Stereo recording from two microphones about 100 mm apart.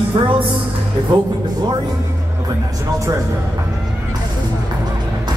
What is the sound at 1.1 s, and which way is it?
Music, 50° right (ahead or behind).